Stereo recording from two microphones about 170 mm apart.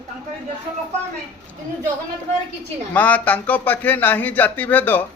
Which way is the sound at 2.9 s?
10° left (ahead or behind).